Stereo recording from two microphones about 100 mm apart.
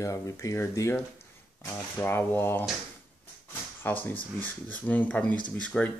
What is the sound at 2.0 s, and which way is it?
Speech, 25° left (ahead or behind).